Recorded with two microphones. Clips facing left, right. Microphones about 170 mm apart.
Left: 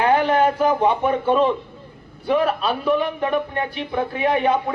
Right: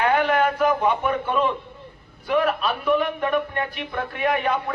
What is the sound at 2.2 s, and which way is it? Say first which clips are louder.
A man's voice: left 2 dB; 30° left (ahead or behind).